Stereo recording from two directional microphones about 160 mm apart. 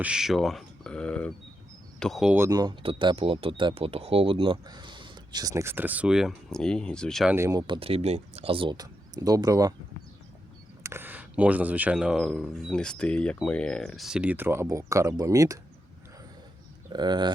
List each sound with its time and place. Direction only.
0.0 s speech: 5° right (ahead or behind)
2.3 s speech: 20° right (ahead or behind); by 7.3 s 5° left (ahead or behind)
7.3 s speech: 15° right (ahead or behind)
7.7 s speech: 35° right (ahead or behind)
10.8 s speech: 15° right (ahead or behind)
16.9 s speech: 25° right (ahead or behind)